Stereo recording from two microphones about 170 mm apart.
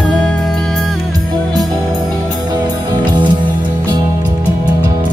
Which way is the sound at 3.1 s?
25° right (ahead or behind).